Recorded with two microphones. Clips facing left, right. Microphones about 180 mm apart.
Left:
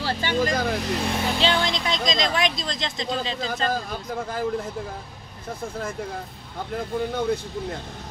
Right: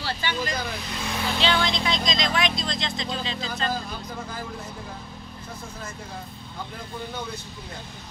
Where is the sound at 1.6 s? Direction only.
40° left (ahead or behind).